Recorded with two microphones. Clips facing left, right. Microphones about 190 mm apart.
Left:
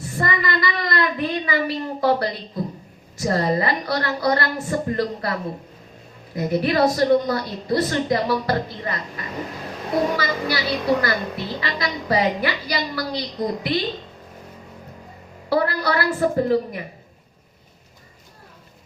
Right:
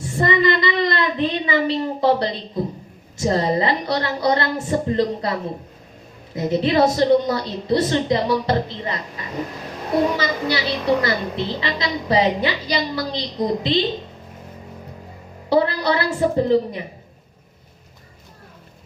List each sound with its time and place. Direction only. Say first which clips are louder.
0.0 s a sound: right 6 dB; 25° right (ahead or behind)
3.2 s a woman's voice: right 2 dB; 20° right (ahead or behind)
15.4 s a woman's voice: right 3 dB; 20° right (ahead or behind)